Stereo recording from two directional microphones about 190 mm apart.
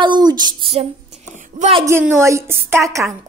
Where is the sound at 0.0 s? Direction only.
20° right (ahead or behind).